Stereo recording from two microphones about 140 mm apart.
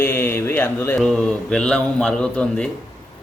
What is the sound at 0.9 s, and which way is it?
A man's voice, 5° left (ahead or behind).